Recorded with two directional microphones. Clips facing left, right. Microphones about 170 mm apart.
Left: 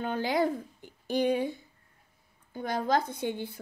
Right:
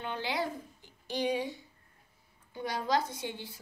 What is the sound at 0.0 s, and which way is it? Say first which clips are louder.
A woman's voice: left 7 dB; 45° left (ahead or behind).